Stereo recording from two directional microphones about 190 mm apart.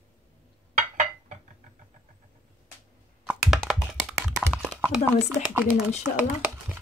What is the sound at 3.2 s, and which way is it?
Computer keyboard, centre (ahead or behind).